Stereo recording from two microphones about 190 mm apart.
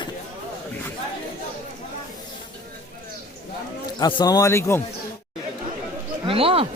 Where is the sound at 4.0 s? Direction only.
25° left (ahead or behind).